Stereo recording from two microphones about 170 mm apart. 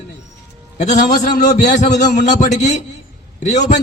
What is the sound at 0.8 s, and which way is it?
A man's voice, 50° left (ahead or behind).